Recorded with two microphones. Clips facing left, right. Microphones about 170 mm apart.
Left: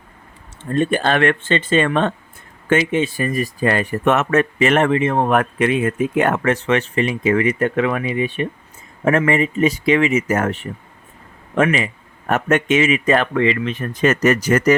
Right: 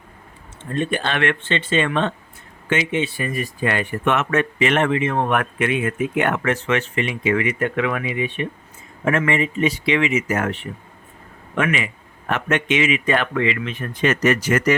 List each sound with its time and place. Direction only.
0.8 s speech: 40° left (ahead or behind)